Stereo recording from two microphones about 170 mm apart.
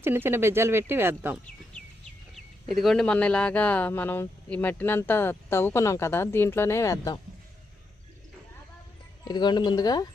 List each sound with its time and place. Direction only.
0.0 s speech: 15° right (ahead or behind)
2.3 s speech: centre (ahead or behind); by 7.2 s 20° left (ahead or behind)
9.2 s speech: 25° left (ahead or behind)